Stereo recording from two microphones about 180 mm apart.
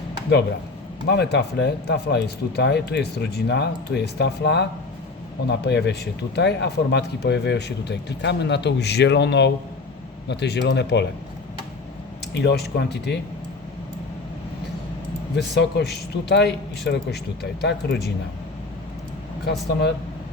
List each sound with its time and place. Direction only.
1.0 s speech: 70° left (ahead or behind)
12.3 s speech: 65° left (ahead or behind)
15.4 s speech: 65° left (ahead or behind)